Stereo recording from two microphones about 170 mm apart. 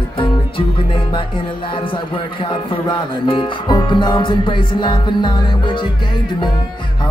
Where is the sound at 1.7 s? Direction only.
30° left (ahead or behind).